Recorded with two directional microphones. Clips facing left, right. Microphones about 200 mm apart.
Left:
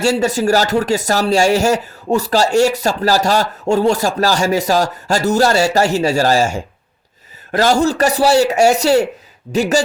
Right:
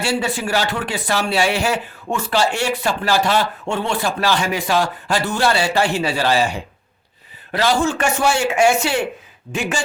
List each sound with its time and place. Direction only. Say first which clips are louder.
0.0 s speech: left 6 dB; 40° left (ahead or behind)